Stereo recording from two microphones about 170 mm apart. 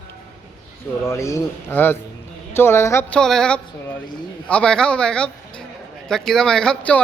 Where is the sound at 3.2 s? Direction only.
5° left (ahead or behind).